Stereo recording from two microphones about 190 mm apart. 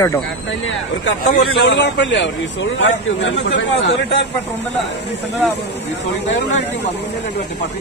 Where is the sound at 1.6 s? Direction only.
65° left (ahead or behind).